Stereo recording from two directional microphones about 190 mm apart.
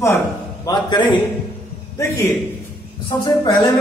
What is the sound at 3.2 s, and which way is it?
Speech, 25° left (ahead or behind).